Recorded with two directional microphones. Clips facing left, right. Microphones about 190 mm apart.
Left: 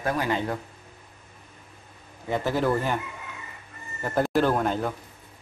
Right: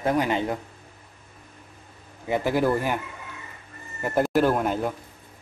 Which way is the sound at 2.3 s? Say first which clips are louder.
Right 2 dB; 15° right (ahead or behind).